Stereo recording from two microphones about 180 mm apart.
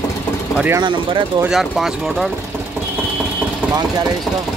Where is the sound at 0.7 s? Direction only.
25° right (ahead or behind).